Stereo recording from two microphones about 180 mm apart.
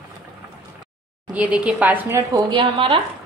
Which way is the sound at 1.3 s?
5° right (ahead or behind).